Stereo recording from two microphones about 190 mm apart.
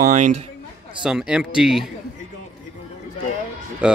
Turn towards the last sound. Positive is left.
turn(degrees=-5)  # may be behind; listen again after turning